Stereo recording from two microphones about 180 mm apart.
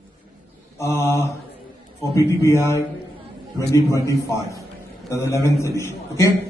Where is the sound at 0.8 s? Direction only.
15° left (ahead or behind).